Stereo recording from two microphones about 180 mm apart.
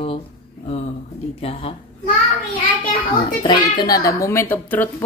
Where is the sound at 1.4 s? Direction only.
30° left (ahead or behind).